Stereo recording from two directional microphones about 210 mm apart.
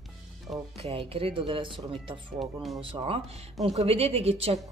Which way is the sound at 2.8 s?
25° right (ahead or behind).